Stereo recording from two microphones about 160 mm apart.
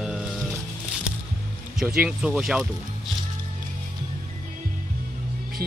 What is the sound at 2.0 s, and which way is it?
Speech, 5° right (ahead or behind).